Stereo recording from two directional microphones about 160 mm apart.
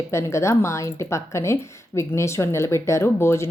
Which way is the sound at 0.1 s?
15° left (ahead or behind).